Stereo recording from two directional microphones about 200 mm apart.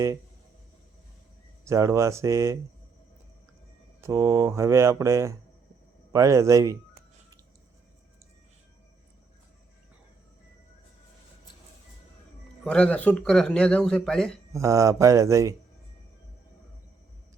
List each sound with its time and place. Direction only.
1.6 s speech: 15° right (ahead or behind)
4.0 s speech: 15° right (ahead or behind)
12.6 s speech: 5° left (ahead or behind)
14.5 s speech: 15° right (ahead or behind)